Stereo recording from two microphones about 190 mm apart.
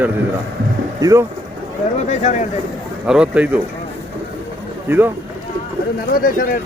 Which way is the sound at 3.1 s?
5° right (ahead or behind).